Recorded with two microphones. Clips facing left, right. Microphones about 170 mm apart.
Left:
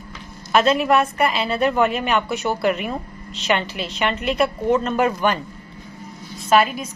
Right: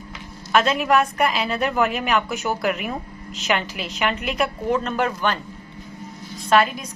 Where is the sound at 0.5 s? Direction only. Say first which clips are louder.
Left 2 dB; centre (ahead or behind).